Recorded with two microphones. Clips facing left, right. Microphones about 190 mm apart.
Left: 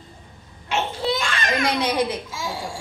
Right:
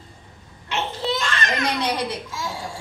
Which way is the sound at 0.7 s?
10° left (ahead or behind).